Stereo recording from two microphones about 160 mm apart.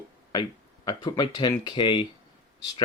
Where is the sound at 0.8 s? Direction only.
25° left (ahead or behind).